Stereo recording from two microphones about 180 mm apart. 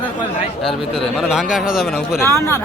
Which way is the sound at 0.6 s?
Centre (ahead or behind).